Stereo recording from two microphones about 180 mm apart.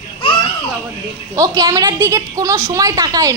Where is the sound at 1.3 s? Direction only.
20° right (ahead or behind).